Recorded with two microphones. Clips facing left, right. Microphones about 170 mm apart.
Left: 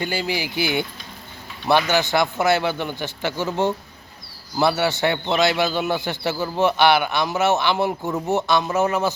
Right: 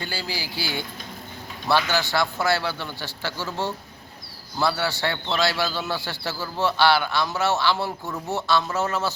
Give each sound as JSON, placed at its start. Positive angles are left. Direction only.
{"t": 0.0, "sound": "a man's voice", "side_deg": 20}